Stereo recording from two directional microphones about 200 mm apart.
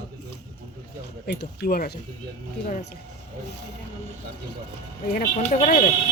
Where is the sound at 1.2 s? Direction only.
55° left (ahead or behind).